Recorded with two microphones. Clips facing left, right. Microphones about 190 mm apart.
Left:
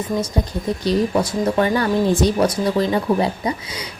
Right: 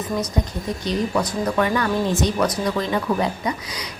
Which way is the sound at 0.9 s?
25° left (ahead or behind).